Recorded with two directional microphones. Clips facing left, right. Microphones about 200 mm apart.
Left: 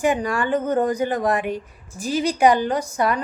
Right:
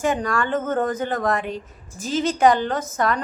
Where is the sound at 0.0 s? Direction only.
15° left (ahead or behind).